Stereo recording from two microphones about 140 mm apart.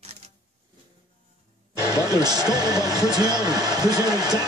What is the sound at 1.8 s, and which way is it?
Music, 20° left (ahead or behind).